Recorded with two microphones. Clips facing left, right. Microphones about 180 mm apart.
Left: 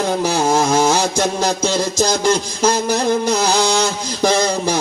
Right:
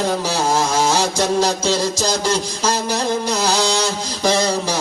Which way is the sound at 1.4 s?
50° left (ahead or behind).